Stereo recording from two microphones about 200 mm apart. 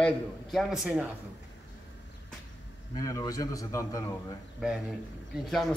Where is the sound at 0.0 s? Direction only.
Centre (ahead or behind).